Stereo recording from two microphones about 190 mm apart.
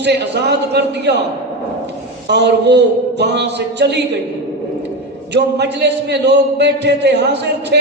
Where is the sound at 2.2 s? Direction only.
65° right (ahead or behind).